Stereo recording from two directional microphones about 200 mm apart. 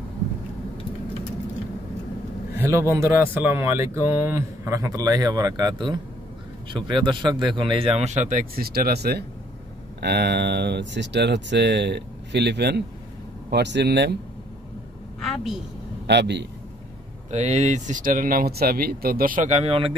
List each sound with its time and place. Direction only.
2.5 s a man's voice: 15° right (ahead or behind); by 14.1 s 60° right (ahead or behind)
15.1 s a sound: centre (ahead or behind)
16.1 s speech: 60° right (ahead or behind)
17.3 s speech: 35° right (ahead or behind)